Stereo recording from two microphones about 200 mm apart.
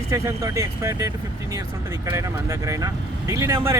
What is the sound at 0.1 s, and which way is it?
Speech, 15° right (ahead or behind).